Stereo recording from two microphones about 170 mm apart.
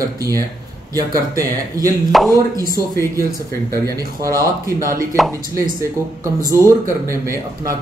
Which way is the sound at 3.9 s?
20° right (ahead or behind).